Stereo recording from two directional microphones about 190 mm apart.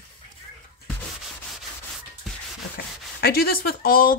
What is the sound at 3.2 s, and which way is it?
Rub, 55° left (ahead or behind).